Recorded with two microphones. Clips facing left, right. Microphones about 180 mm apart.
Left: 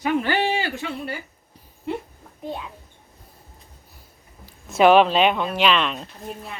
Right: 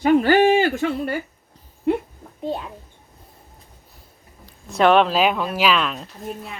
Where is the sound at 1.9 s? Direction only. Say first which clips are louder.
Right 8 dB; 55° right (ahead or behind).